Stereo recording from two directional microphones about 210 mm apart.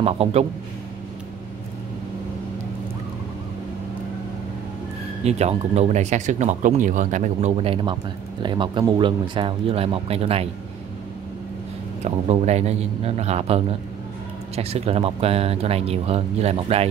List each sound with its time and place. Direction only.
0.0 s speech: 30° right (ahead or behind)
5.2 s speech: 30° right (ahead or behind)
12.0 s a man's voice: 30° right (ahead or behind)